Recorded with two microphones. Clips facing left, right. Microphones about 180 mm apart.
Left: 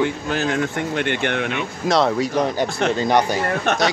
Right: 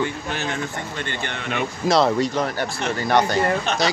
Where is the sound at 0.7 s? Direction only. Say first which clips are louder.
Left 7 dB; 60° left (ahead or behind).